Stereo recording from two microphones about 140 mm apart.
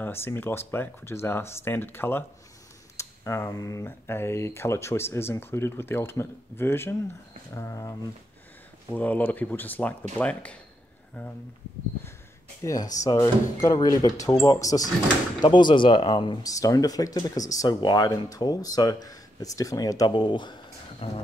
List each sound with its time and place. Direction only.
0.0 s speech: 15° left (ahead or behind)
8.9 s speech: 10° left (ahead or behind)
12.6 s speech: 25° left (ahead or behind); by 21.2 s 40° left (ahead or behind)